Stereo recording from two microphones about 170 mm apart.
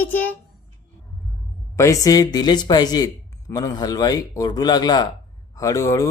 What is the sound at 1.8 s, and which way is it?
Speech, 20° left (ahead or behind).